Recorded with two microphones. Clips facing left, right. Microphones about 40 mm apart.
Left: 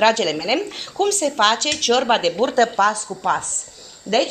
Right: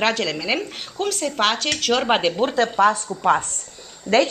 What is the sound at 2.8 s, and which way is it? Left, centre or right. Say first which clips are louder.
Speech: right 2 dB; right.